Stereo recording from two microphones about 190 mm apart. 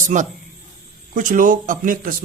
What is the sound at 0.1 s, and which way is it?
A man's voice, 40° right (ahead or behind).